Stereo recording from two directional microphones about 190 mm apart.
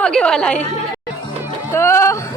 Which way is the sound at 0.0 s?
5° left (ahead or behind).